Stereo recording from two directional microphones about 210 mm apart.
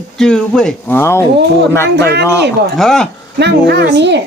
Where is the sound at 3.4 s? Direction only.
55° right (ahead or behind).